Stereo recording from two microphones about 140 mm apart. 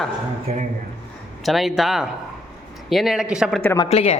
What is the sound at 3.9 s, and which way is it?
Speech, 45° left (ahead or behind).